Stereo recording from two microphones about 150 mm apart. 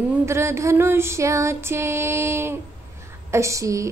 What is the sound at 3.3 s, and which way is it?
Speech, 20° right (ahead or behind).